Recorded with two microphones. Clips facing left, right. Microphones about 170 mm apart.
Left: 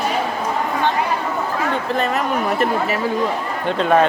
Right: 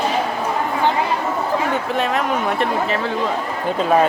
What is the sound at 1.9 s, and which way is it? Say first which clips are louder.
Speech: even; centre (ahead or behind).